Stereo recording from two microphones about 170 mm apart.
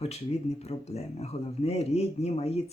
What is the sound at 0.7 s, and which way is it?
Speech, 40° left (ahead or behind).